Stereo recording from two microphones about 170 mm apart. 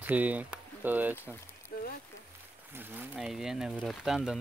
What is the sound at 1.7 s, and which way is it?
Speech, 65° left (ahead or behind).